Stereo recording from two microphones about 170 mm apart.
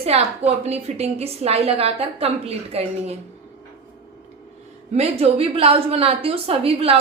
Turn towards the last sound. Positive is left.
turn(degrees=-35)  # may be behind; listen again after turning